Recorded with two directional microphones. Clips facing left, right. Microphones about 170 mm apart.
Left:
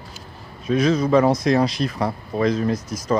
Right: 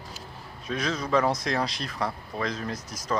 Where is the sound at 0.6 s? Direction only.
10° left (ahead or behind).